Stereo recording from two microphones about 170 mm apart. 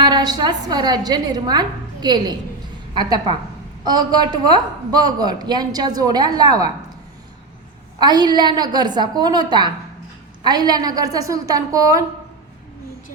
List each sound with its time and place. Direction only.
0.0 s a woman's voice: 25° right (ahead or behind)
7.9 s a woman's voice: 25° right (ahead or behind)